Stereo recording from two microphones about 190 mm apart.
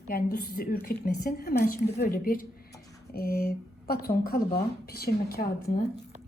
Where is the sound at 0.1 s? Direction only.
50° left (ahead or behind).